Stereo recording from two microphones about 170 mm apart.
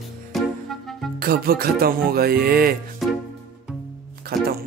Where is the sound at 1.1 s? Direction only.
60° right (ahead or behind).